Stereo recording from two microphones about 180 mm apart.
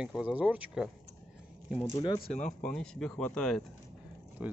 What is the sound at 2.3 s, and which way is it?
Speech, 40° left (ahead or behind).